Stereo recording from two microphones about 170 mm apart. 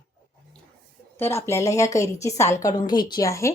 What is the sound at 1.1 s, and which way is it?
A woman's voice, 15° left (ahead or behind).